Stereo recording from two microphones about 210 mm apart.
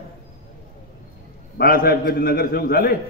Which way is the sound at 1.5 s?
45° left (ahead or behind).